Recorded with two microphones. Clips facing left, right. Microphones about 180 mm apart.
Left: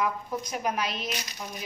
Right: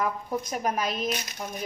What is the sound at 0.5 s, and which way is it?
Speech, 45° right (ahead or behind).